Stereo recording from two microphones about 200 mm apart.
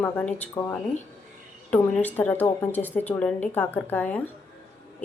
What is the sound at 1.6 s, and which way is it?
A woman's voice, 10° left (ahead or behind).